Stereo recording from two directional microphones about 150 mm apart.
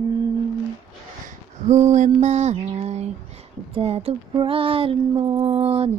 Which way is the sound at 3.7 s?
40° right (ahead or behind).